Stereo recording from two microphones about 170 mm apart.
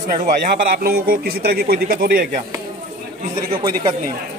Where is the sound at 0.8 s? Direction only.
65° right (ahead or behind).